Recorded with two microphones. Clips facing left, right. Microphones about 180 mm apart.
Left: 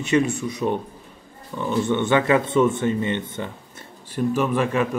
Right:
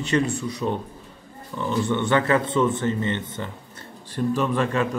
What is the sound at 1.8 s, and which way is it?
Speech, 20° left (ahead or behind).